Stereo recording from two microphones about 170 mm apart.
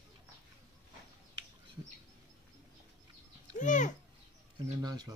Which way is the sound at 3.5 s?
50° left (ahead or behind).